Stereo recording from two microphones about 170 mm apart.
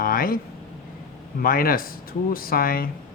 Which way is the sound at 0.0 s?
55° left (ahead or behind).